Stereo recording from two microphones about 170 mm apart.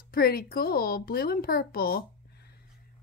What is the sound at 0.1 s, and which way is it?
A woman's voice, 60° left (ahead or behind).